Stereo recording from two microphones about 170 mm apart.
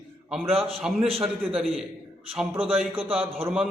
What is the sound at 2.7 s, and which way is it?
Speech, 5° right (ahead or behind).